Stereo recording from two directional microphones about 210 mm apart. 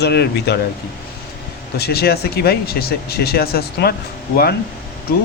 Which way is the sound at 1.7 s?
50° left (ahead or behind).